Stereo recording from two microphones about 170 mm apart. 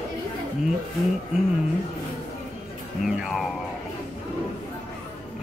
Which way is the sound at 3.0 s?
5° right (ahead or behind).